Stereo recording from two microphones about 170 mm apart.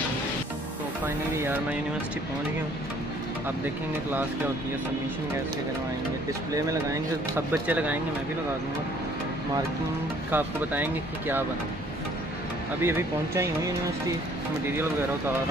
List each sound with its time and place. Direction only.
1.0 s speech: 10° right (ahead or behind)
6.5 s speech: 20° right (ahead or behind)
10.3 s speech: 10° right (ahead or behind)
12.8 s speech: 15° right (ahead or behind)